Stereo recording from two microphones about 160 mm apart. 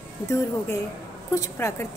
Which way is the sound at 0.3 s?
20° left (ahead or behind).